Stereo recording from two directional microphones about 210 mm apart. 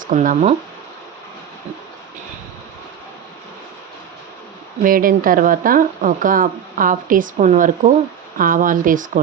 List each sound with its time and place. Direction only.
0.0 s speech: 40° right (ahead or behind)
4.8 s speech: 40° right (ahead or behind)